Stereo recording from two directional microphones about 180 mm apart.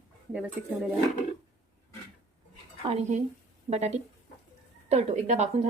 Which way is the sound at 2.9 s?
35° right (ahead or behind).